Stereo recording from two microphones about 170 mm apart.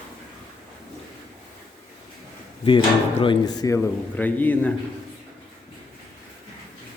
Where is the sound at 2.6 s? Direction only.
30° left (ahead or behind); by 4.7 s 10° left (ahead or behind).